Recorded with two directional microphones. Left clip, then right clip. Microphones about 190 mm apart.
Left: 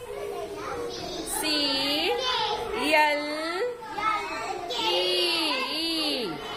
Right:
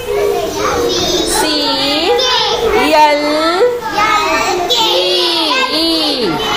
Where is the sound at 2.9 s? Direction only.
15° left (ahead or behind).